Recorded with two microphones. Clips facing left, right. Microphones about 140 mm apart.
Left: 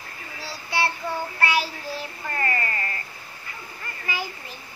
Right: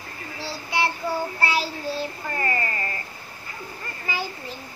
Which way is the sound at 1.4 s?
30° right (ahead or behind).